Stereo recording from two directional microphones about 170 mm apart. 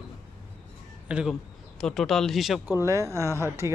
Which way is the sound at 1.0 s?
5° right (ahead or behind).